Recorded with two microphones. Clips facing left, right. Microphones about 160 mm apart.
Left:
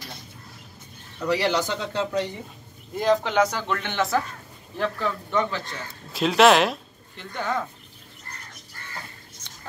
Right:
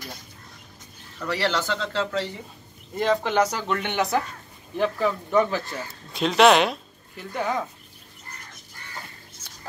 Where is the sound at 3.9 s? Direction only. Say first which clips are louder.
Left 1 dB; 20° right (ahead or behind).